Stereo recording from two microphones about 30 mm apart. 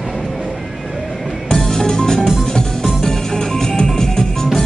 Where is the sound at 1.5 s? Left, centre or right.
Centre.